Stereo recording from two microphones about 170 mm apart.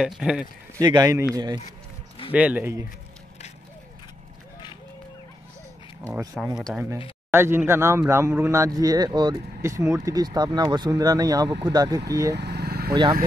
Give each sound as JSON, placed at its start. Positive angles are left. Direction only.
{"t": 0.0, "sound": "speech", "side_deg": -5}
{"t": 0.7, "sound": "speech", "side_deg": -20}
{"t": 2.3, "sound": "speech", "side_deg": -10}
{"t": 6.6, "sound": "speech", "side_deg": -5}
{"t": 12.4, "sound": "vehicle", "side_deg": -75}
{"t": 12.9, "sound": "speech", "side_deg": -25}